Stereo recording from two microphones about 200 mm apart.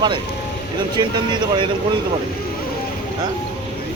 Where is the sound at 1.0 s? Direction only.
20° right (ahead or behind).